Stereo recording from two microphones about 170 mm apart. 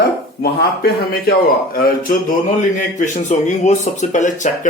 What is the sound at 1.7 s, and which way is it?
Speech, 60° left (ahead or behind).